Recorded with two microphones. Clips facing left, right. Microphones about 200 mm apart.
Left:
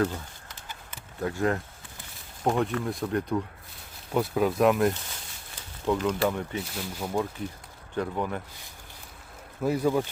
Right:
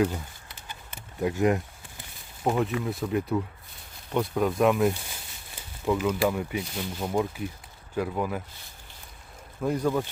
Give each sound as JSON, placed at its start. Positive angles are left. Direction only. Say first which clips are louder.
{"t": 1.2, "sound": "speech", "louder": "right 3 dB", "side_deg": -15}
{"t": 2.4, "sound": "speech", "louder": "even", "side_deg": -5}
{"t": 9.6, "sound": "speech", "louder": "left 1 dB", "side_deg": 10}